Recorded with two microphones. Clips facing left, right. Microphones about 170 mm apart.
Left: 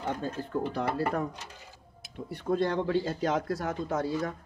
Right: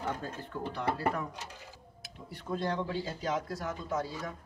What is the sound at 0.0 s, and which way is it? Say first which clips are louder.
Speech: left 4 dB; 30° left (ahead or behind).